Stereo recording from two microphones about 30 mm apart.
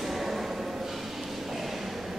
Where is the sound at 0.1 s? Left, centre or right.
Centre.